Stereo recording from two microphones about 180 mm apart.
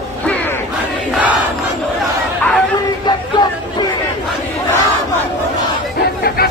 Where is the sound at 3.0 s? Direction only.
25° left (ahead or behind).